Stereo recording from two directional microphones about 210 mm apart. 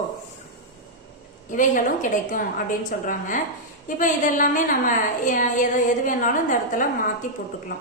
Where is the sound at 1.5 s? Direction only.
40° left (ahead or behind).